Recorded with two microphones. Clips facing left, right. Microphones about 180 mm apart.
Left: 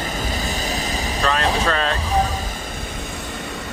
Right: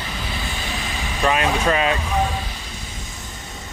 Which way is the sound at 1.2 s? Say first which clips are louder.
Right 2 dB; 15° right (ahead or behind).